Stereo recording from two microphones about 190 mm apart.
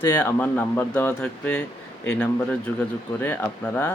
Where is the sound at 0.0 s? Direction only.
10° left (ahead or behind).